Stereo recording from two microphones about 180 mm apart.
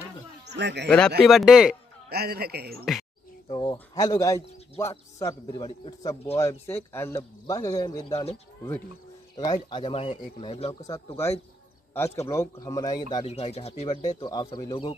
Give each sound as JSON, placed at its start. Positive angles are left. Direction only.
{"t": 0.6, "sound": "speech", "side_deg": -70}
{"t": 0.8, "sound": "speech", "side_deg": 5}
{"t": 2.0, "sound": "a man's voice", "side_deg": -60}
{"t": 2.8, "sound": "speech", "side_deg": 0}
{"t": 3.4, "sound": "a man's voice", "side_deg": 25}
{"t": 6.3, "sound": "speech", "side_deg": 15}
{"t": 9.4, "sound": "a man's voice", "side_deg": 25}
{"t": 10.8, "sound": "a man's voice", "side_deg": 20}
{"t": 13.2, "sound": "speech", "side_deg": 35}
{"t": 14.2, "sound": "a man's voice", "side_deg": 25}